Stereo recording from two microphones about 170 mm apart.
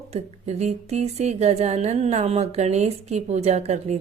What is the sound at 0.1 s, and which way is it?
A woman's voice, 40° right (ahead or behind).